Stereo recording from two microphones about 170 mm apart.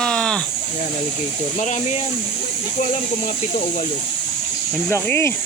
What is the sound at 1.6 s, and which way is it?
Speech, 45° left (ahead or behind).